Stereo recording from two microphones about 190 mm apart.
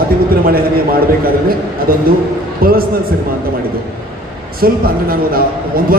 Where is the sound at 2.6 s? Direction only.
50° right (ahead or behind).